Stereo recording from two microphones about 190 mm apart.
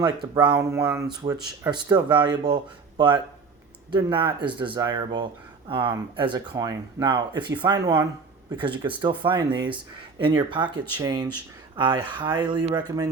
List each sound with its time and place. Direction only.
0.3 s speech: 20° right (ahead or behind)
3.9 s speech: 25° right (ahead or behind)